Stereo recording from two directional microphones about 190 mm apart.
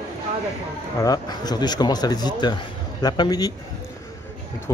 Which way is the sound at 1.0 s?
20° left (ahead or behind).